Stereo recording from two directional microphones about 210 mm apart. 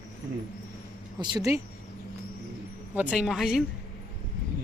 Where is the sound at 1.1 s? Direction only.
20° right (ahead or behind).